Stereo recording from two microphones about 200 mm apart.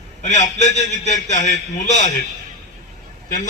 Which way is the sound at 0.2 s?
35° left (ahead or behind).